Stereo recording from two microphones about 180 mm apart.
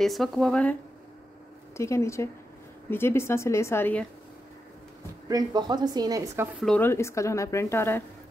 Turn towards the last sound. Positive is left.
turn(degrees=15)  # may be behind; listen again after turning